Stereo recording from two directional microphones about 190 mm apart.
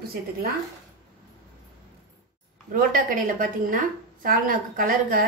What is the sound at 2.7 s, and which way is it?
A woman's voice, 45° right (ahead or behind).